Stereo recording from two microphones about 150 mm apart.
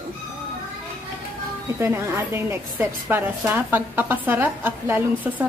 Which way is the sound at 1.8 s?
15° right (ahead or behind).